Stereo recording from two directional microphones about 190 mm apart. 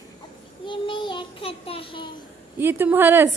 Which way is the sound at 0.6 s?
25° left (ahead or behind).